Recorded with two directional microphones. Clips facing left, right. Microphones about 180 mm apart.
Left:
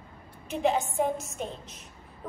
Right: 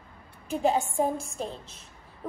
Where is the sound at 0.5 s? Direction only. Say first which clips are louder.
Right 1 dB; 35° right (ahead or behind).